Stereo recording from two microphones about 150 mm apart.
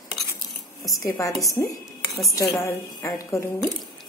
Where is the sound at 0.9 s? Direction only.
20° left (ahead or behind).